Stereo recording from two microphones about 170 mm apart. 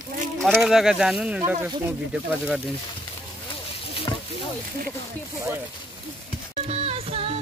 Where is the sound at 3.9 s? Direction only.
30° left (ahead or behind).